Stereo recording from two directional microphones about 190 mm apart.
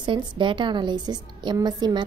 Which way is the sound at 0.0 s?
25° right (ahead or behind).